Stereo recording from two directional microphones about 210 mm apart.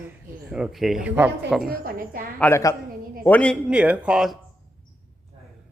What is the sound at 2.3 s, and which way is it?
Speech, 10° left (ahead or behind).